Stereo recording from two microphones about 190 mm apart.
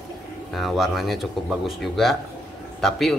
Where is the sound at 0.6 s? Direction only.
Centre (ahead or behind).